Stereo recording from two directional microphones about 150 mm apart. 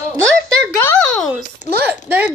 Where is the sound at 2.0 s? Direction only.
10° right (ahead or behind).